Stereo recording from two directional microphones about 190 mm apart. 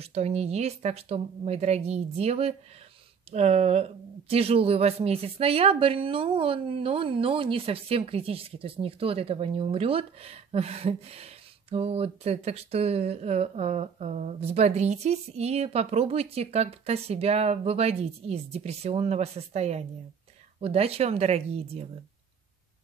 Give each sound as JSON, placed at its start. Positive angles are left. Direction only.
{"t": 0.0, "sound": "speech", "side_deg": -35}